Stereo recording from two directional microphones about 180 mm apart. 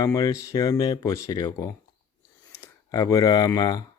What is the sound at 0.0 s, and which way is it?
Speech, 20° left (ahead or behind).